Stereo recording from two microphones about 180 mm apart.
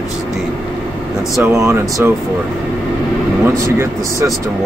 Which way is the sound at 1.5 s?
15° right (ahead or behind).